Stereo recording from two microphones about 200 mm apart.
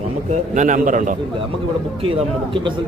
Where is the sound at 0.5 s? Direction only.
40° right (ahead or behind).